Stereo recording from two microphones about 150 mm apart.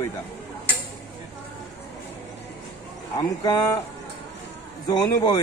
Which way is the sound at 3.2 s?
25° left (ahead or behind).